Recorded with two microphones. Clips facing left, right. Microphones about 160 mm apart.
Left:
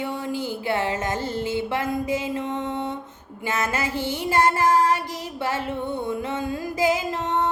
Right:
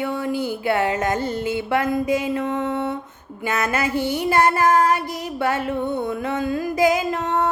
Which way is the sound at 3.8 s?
10° right (ahead or behind).